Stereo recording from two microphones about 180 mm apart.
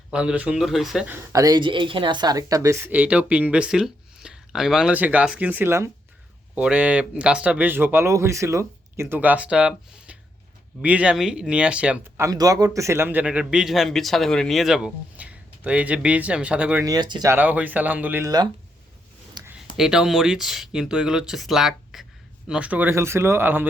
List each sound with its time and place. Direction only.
0.1 s speech: 5° right (ahead or behind)
1.1 s speech: 20° right (ahead or behind)
16.8 s speech: 20° right (ahead or behind)
17.3 s speech: 10° right (ahead or behind)
19.5 s speech: 5° right (ahead or behind)